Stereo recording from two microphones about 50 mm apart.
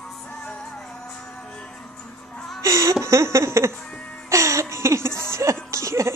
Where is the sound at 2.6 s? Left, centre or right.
Right.